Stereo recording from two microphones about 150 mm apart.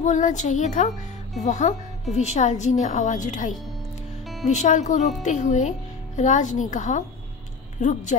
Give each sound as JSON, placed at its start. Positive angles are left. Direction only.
{"t": 0.0, "sound": "a woman's voice", "side_deg": 55}